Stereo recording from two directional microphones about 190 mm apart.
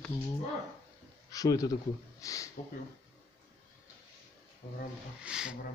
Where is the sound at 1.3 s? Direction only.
20° left (ahead or behind).